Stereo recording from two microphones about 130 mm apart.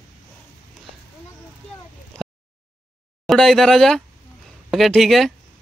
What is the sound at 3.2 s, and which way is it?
Speech, 5° left (ahead or behind).